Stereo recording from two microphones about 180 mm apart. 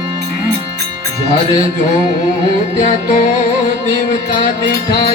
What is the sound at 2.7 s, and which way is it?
Music, 40° left (ahead or behind).